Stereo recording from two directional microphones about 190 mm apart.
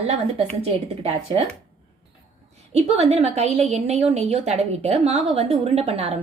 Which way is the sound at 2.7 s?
35° right (ahead or behind).